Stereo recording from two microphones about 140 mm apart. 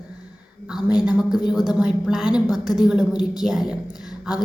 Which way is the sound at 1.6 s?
5° right (ahead or behind).